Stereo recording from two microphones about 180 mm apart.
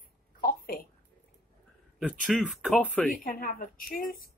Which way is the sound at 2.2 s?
Centre (ahead or behind).